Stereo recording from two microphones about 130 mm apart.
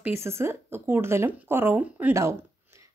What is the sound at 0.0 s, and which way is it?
A woman's voice, 20° right (ahead or behind).